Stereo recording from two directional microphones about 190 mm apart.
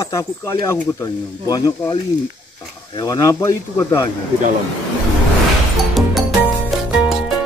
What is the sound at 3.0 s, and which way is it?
Speech, 20° left (ahead or behind).